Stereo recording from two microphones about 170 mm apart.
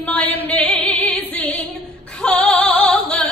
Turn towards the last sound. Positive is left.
turn(degrees=5)  # may be behind; listen again after turning